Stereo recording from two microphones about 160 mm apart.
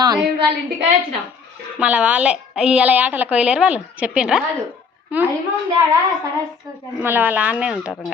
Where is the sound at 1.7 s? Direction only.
10° right (ahead or behind).